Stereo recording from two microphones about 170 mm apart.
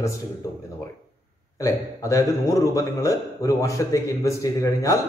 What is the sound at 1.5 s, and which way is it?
Speech, 20° left (ahead or behind).